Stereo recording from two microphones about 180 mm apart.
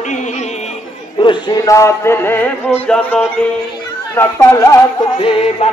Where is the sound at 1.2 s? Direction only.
20° left (ahead or behind).